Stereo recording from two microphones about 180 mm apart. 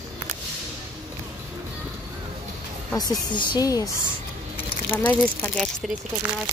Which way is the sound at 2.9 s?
25° left (ahead or behind).